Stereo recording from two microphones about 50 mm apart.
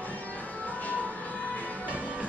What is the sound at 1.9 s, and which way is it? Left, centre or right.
Music, right.